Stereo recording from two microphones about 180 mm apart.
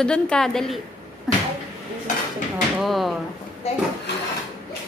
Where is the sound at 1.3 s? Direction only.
Centre (ahead or behind).